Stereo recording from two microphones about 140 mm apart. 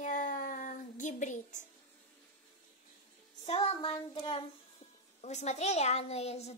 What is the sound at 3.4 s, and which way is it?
Child singing, 45° left (ahead or behind).